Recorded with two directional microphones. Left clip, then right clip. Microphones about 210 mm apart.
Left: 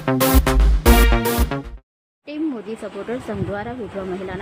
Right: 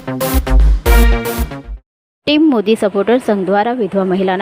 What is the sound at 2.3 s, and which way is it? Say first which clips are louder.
Speech: right 15 dB; 40° right (ahead or behind).